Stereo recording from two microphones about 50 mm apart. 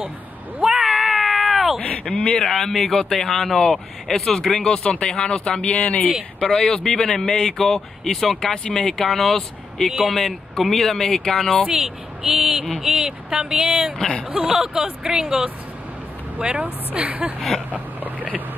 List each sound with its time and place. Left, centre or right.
0.7 s cat: centre
1.8 s speech: left
2.3 s speech: centre; by 6.0 s left
6.4 s speech: centre
11.7 s speech: centre
16.3 s speech: right
17.6 s a sound: right